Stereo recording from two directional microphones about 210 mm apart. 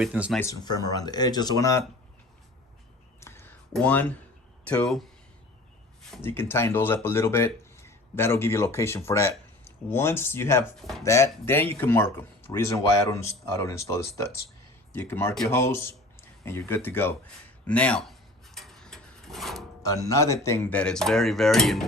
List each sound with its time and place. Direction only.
0.0 s speech: 5° right (ahead or behind)
0.3 s speech: 15° left (ahead or behind)
3.2 s a sound: 10° left (ahead or behind)
3.7 s speech: 5° left (ahead or behind)
6.1 s speech: 10° left (ahead or behind)
17.7 s a sound: 5° left (ahead or behind)
19.8 s speech: 15° left (ahead or behind)